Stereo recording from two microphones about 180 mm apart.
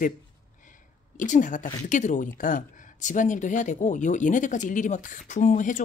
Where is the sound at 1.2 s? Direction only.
45° left (ahead or behind).